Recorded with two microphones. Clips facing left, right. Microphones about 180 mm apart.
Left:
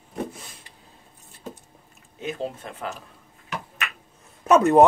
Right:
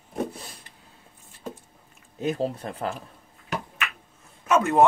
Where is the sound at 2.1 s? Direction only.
40° right (ahead or behind).